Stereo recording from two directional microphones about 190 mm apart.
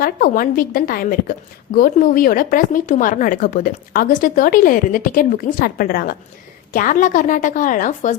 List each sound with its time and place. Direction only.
0.0 s a woman's voice: 50° left (ahead or behind)